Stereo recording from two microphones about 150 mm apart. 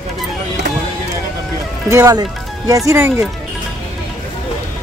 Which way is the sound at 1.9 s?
25° right (ahead or behind).